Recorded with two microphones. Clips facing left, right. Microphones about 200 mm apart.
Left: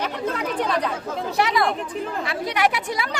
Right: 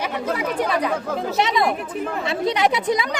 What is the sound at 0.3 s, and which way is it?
Speech, 10° right (ahead or behind).